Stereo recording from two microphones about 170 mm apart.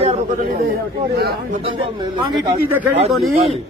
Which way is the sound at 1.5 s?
30° right (ahead or behind).